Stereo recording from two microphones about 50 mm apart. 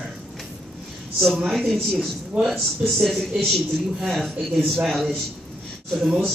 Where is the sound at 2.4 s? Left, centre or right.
Right.